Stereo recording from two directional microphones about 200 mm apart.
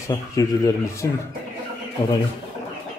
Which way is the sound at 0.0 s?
15° left (ahead or behind).